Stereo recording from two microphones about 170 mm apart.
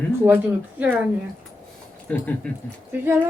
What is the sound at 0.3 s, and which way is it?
Speech, 10° right (ahead or behind).